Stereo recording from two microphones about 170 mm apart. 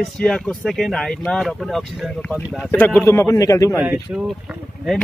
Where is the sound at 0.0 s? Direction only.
5° left (ahead or behind).